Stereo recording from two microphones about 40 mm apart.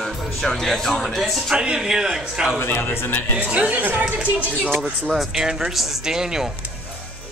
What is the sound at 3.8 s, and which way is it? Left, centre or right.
Speech, right.